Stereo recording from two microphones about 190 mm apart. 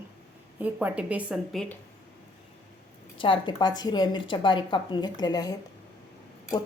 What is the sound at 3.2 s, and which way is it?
A woman's voice, 25° left (ahead or behind).